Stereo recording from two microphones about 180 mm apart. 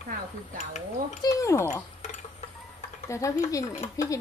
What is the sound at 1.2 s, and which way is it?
Speech, 15° left (ahead or behind).